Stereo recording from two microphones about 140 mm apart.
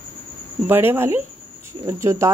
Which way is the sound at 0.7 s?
15° right (ahead or behind).